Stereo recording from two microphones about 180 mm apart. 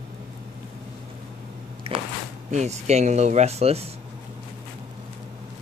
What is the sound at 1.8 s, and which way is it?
Biting, 30° right (ahead or behind).